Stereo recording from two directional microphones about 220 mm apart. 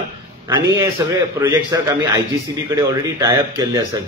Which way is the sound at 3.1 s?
15° right (ahead or behind).